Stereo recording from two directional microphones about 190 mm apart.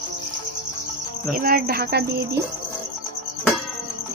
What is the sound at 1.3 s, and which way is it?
Speech, 50° right (ahead or behind).